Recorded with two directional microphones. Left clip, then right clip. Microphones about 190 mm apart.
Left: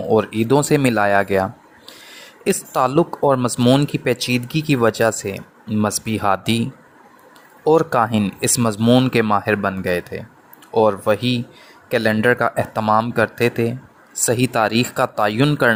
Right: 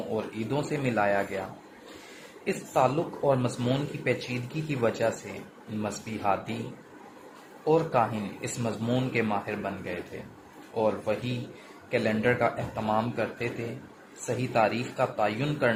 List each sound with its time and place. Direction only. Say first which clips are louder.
0.1 s speech: left 18 dB; 70° left (ahead or behind)
2.4 s speech: left 7 dB; 65° left (ahead or behind)
7.6 s speech: left 9 dB; 70° left (ahead or behind)
10.8 s speech: left 12 dB; 70° left (ahead or behind)